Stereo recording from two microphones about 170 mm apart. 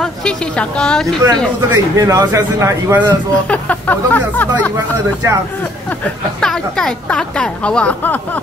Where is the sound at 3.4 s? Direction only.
10° left (ahead or behind).